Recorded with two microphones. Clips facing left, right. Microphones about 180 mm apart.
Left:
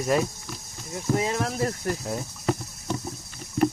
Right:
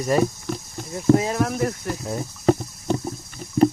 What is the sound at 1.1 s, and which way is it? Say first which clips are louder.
Speech: right 9 dB; 65° right (ahead or behind).